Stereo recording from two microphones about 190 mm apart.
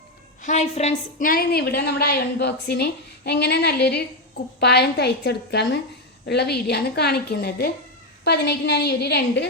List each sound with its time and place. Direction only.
0.4 s a woman's voice: 40° left (ahead or behind); by 9.5 s 60° left (ahead or behind)